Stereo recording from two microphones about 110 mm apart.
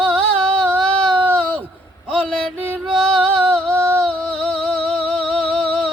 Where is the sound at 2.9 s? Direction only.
5° left (ahead or behind).